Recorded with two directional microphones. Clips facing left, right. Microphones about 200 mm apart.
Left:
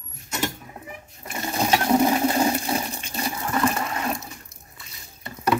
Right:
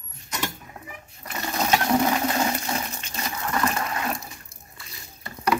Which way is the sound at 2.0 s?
15° left (ahead or behind).